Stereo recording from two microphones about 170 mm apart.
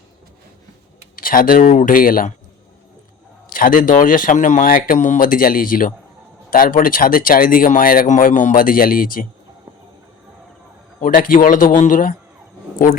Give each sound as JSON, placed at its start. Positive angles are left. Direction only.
{"t": 1.1, "sound": "speech", "side_deg": 55}
{"t": 3.5, "sound": "speech", "side_deg": 55}
{"t": 11.0, "sound": "a man's voice", "side_deg": 55}